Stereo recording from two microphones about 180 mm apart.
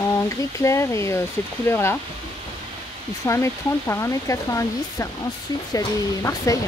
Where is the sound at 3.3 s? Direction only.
15° left (ahead or behind).